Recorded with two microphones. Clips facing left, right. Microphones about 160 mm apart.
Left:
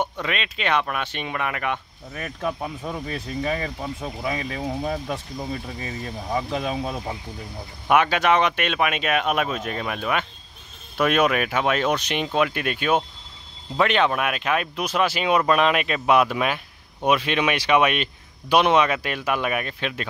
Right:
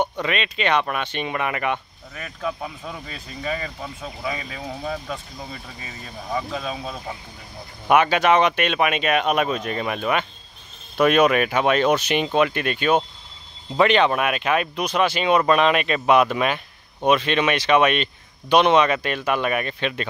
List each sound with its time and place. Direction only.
0.0 s speech: centre (ahead or behind)
3.5 s speech: 15° left (ahead or behind)
6.3 s speech: 15° left (ahead or behind)
7.9 s speech: centre (ahead or behind)